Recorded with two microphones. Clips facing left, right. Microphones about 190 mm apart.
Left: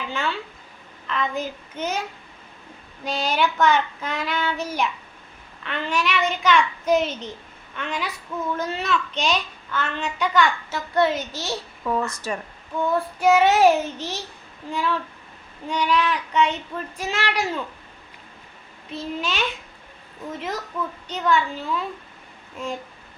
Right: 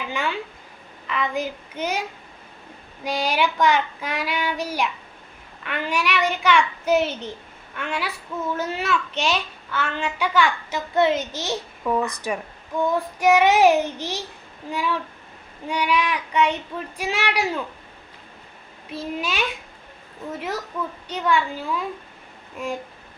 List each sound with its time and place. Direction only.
0.1 s a child's voice: 15° right (ahead or behind)
10.9 s a child's voice: 20° right (ahead or behind)
18.9 s a child's voice: 10° right (ahead or behind)
21.1 s a child's voice: 10° right (ahead or behind)